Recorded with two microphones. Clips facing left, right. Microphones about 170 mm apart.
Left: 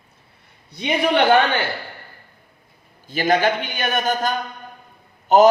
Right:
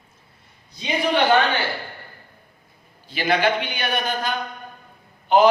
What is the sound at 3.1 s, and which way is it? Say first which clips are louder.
A man's voice: left 2 dB; 45° left (ahead or behind).